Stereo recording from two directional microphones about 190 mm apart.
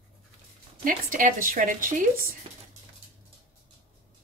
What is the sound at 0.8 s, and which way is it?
A woman's voice, 45° right (ahead or behind).